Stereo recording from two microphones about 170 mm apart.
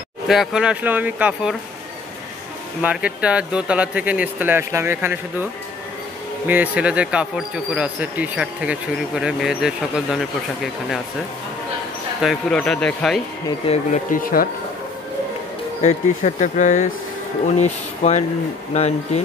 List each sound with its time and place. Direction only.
0.3 s speech: centre (ahead or behind)
2.8 s speech: 5° right (ahead or behind)
12.2 s speech: centre (ahead or behind)
13.7 s speech: 35° left (ahead or behind)
14.1 s speech: 55° left (ahead or behind)
15.8 s speech: 45° left (ahead or behind)